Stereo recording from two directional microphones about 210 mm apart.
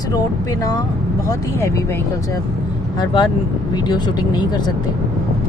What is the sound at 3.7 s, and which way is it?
Speech, 20° left (ahead or behind).